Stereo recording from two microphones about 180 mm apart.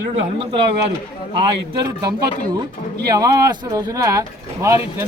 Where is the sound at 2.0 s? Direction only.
20° right (ahead or behind).